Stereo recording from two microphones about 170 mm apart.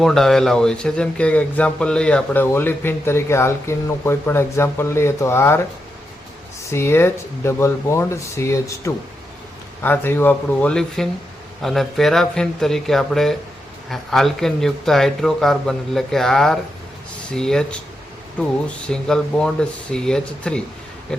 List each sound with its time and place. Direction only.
0.0 s speech: centre (ahead or behind)
6.7 s speech: 15° left (ahead or behind)